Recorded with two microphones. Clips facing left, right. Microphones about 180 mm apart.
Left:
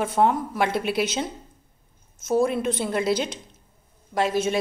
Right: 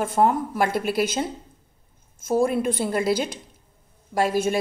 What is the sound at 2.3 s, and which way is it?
A woman's voice, 5° right (ahead or behind).